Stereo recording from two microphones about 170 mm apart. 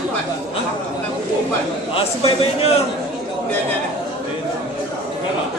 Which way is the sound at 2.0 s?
35° left (ahead or behind).